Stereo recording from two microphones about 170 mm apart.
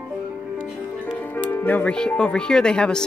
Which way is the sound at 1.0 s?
10° left (ahead or behind).